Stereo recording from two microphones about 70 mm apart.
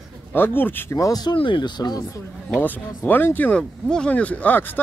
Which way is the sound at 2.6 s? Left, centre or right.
Left.